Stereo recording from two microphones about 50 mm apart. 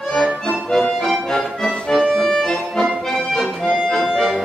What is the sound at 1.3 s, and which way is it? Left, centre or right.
Music, centre.